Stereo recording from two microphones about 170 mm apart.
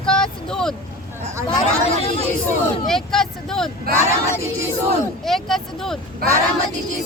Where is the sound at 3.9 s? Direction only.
60° right (ahead or behind).